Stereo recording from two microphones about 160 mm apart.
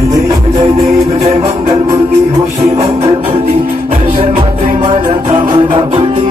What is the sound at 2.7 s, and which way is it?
Music, 40° right (ahead or behind).